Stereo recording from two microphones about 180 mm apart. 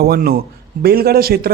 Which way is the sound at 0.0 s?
55° right (ahead or behind).